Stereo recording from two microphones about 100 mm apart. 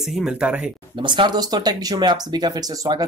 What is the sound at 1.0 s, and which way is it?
Speech, 50° right (ahead or behind).